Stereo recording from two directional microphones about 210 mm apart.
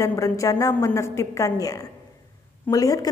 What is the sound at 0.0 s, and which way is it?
A woman's voice, 15° left (ahead or behind).